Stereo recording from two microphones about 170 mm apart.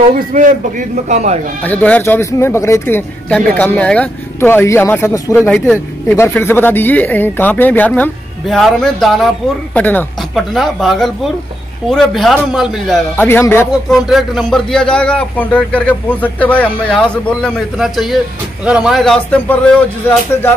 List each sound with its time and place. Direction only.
0.1 s a man's voice: 50° right (ahead or behind)
1.6 s a man's voice: 10° left (ahead or behind)
13.1 s speech: 15° left (ahead or behind)
13.8 s a man's voice: centre (ahead or behind)